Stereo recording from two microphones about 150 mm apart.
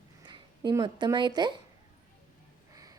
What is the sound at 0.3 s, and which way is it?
Speech, 30° right (ahead or behind).